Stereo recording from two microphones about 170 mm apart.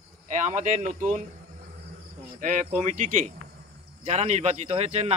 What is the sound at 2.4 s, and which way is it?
Speech, 50° right (ahead or behind).